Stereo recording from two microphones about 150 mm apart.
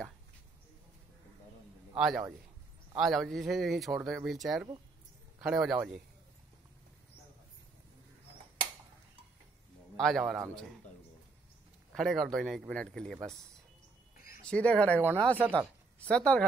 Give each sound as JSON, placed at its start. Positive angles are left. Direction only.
{"t": 2.0, "sound": "a man's voice", "side_deg": 0}
{"t": 9.9, "sound": "a man's voice", "side_deg": 5}
{"t": 11.9, "sound": "speech", "side_deg": 0}
{"t": 14.4, "sound": "speech", "side_deg": 5}